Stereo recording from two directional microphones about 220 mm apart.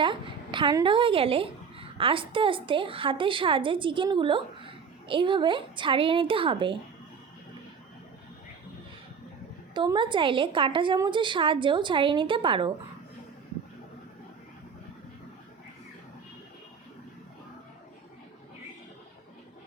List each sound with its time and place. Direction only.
0.0 s a woman's voice: 20° right (ahead or behind)
9.7 s a woman's voice: 20° right (ahead or behind)